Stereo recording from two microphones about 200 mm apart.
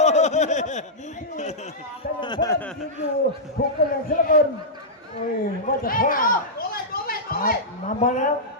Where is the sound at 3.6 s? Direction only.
45° left (ahead or behind).